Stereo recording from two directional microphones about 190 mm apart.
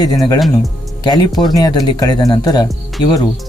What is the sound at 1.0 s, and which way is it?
Speech, 20° left (ahead or behind).